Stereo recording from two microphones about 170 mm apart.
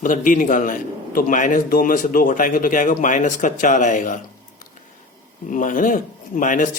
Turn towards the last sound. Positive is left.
turn(degrees=50)  # may be behind; listen again after turning